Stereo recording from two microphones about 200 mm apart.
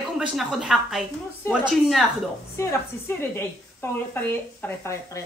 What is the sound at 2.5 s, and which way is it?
A woman's voice, 15° left (ahead or behind).